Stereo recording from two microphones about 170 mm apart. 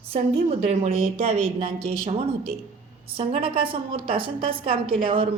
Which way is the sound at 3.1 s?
30° right (ahead or behind).